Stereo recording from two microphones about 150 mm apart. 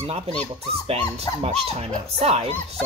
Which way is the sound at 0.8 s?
40° right (ahead or behind).